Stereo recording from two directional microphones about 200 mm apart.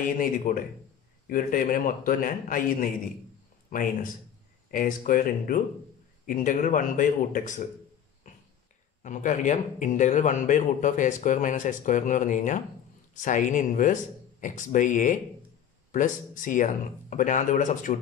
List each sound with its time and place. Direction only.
0.0 s a man's voice: 45° left (ahead or behind)
4.6 s a man's voice: 45° left (ahead or behind)
9.0 s a man's voice: 40° left (ahead or behind)